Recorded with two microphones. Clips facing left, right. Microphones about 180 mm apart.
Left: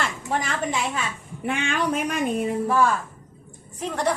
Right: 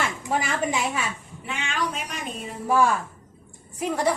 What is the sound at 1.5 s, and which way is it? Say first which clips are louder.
Speech: left 5 dB; 55° left (ahead or behind).